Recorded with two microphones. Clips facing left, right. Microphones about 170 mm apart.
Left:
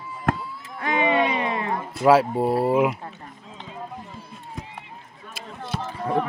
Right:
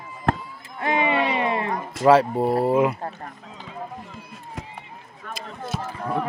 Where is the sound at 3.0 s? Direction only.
55° right (ahead or behind).